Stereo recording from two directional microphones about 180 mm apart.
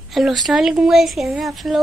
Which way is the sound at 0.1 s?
Centre (ahead or behind).